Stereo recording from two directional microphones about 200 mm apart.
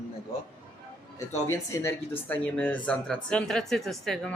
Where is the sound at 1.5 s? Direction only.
15° left (ahead or behind).